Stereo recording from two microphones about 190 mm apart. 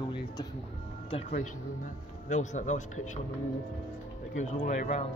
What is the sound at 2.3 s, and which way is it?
Speech, 40° left (ahead or behind).